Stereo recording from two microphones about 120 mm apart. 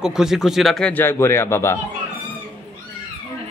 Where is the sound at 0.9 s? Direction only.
20° left (ahead or behind).